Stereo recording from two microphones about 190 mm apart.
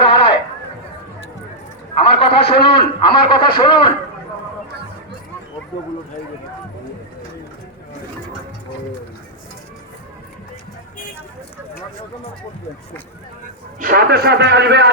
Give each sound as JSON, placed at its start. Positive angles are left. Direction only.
{"t": 0.0, "sound": "sheep", "side_deg": 30}
{"t": 2.0, "sound": "a man's voice", "side_deg": 30}
{"t": 13.7, "sound": "a man's voice", "side_deg": -50}